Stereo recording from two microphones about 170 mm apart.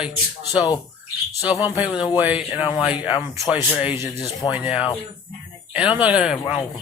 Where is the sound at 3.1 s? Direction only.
25° left (ahead or behind).